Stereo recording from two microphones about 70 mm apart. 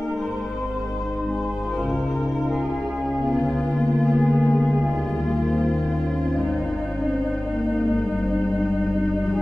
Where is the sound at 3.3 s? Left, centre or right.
Centre.